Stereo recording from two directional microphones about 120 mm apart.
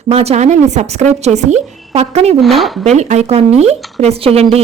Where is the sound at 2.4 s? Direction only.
Centre (ahead or behind).